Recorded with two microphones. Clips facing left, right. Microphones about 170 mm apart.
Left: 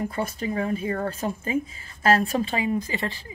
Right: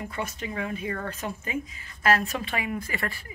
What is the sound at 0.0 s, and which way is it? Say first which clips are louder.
Speech: left 6 dB; 35° left (ahead or behind).